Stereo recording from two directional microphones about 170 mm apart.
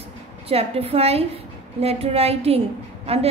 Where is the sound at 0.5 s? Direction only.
35° right (ahead or behind).